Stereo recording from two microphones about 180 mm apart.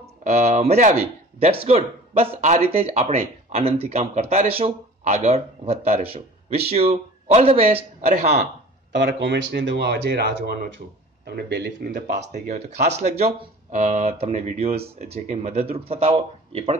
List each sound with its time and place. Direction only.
0.0 s speech: 40° right (ahead or behind)
8.9 s speech: 75° right (ahead or behind); by 12.4 s 55° right (ahead or behind)
12.4 s speech: 40° right (ahead or behind)